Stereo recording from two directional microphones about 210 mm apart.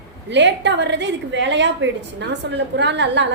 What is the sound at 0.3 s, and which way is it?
A woman's voice, 55° right (ahead or behind).